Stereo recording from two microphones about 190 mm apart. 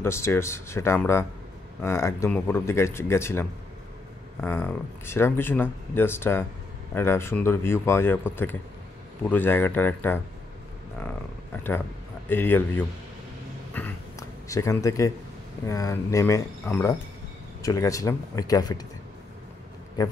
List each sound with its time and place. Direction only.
0.0 s speech: 15° left (ahead or behind)
12.3 s speech: 10° left (ahead or behind)
13.8 s a sound: 10° left (ahead or behind)
14.5 s speech: 15° left (ahead or behind)